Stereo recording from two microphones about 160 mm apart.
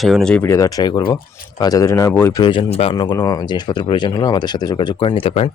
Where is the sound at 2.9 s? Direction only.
25° left (ahead or behind).